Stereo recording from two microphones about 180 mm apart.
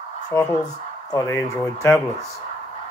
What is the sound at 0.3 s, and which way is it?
Speech, 15° left (ahead or behind).